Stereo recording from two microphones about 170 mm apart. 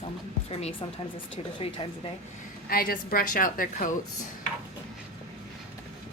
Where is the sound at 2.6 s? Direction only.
60° left (ahead or behind).